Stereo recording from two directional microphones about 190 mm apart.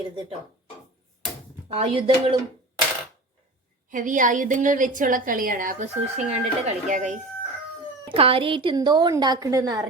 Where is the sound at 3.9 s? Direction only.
45° right (ahead or behind).